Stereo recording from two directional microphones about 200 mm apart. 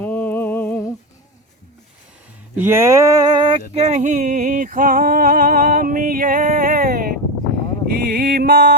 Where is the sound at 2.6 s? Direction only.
10° right (ahead or behind).